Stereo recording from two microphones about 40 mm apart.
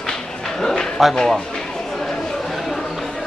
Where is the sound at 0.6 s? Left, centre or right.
Centre.